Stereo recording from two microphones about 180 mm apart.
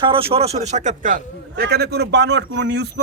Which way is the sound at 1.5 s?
60° right (ahead or behind).